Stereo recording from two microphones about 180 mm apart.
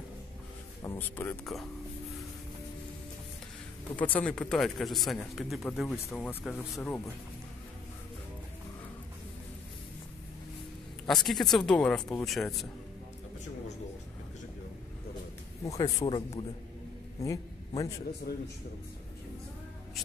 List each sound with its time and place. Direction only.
0.8 s speech: 10° left (ahead or behind)
3.9 s speech: 10° left (ahead or behind)
11.1 s speech: centre (ahead or behind)
15.7 s speech: 20° left (ahead or behind)
17.2 s a sound: 20° left (ahead or behind)
18.3 s a man's voice: 60° left (ahead or behind)